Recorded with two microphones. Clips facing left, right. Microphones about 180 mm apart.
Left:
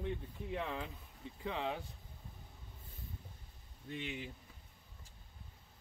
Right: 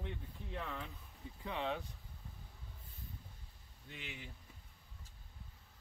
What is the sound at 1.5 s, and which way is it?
Speech, 30° left (ahead or behind).